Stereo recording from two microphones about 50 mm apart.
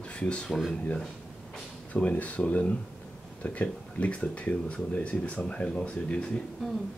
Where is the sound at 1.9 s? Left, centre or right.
Left.